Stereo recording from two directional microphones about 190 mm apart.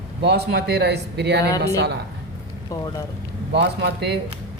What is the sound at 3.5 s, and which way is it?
Speech, 60° right (ahead or behind).